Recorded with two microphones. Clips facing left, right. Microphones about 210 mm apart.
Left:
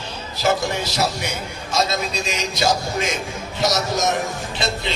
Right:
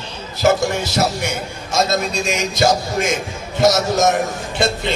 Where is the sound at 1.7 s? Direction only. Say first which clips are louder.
Right 4 dB; 45° right (ahead or behind).